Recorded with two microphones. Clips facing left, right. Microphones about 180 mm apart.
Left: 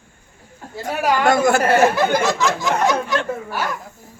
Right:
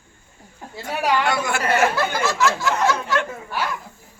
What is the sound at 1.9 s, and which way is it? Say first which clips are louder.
A man's voice: left 4 dB; 15° left (ahead or behind).